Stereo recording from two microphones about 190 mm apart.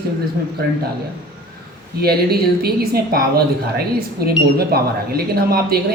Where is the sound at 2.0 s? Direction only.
55° right (ahead or behind).